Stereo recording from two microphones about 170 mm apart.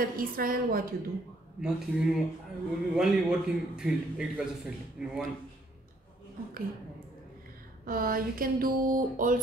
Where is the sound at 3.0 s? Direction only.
5° right (ahead or behind).